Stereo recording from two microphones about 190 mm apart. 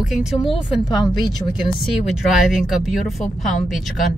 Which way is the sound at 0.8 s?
20° left (ahead or behind).